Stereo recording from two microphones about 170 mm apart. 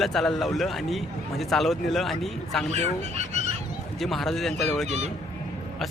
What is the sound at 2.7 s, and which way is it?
Fowl, 40° right (ahead or behind).